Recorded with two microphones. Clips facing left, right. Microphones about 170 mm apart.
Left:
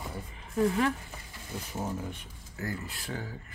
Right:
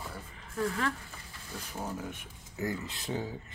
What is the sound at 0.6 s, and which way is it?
Speech, 20° left (ahead or behind).